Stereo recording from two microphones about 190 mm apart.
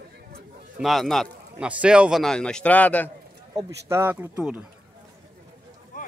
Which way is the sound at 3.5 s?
15° right (ahead or behind).